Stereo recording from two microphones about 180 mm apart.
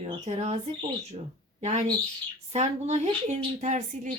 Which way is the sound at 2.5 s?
40° right (ahead or behind).